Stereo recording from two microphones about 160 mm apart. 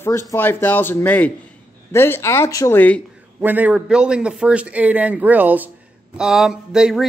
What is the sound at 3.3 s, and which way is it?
A man's voice, 10° right (ahead or behind).